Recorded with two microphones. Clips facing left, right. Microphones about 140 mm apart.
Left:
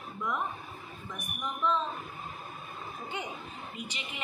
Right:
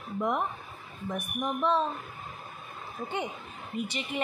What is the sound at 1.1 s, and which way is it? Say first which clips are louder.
Speech: right 7 dB; 55° right (ahead or behind).